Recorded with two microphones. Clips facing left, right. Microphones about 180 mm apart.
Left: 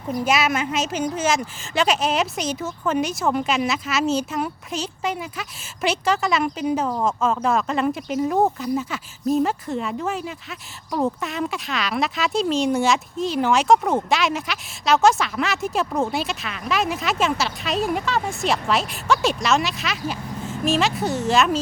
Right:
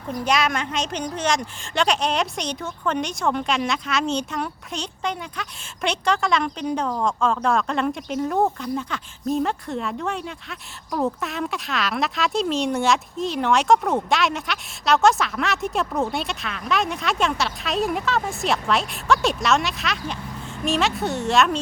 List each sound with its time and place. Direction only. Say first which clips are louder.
0.1 s speech: left 1 dB; 5° left (ahead or behind)